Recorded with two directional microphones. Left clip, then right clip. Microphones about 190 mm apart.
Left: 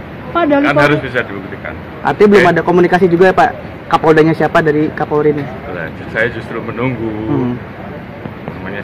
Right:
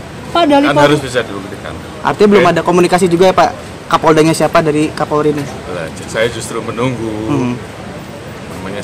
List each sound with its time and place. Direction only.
0.3 s speech: 50° right (ahead or behind)
0.7 s a man's voice: 20° right (ahead or behind)
2.0 s a man's voice: 10° right (ahead or behind)
5.8 s speech: 25° right (ahead or behind)